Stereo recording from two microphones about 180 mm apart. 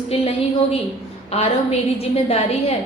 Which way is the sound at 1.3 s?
35° left (ahead or behind).